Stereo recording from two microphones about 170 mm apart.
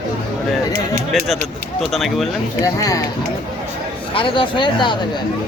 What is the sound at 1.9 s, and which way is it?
Speech, centre (ahead or behind).